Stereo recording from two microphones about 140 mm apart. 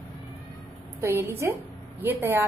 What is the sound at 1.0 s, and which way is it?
A woman's voice, 15° right (ahead or behind).